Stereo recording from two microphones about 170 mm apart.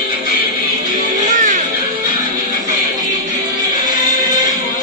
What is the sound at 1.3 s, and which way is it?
Music, 50° right (ahead or behind).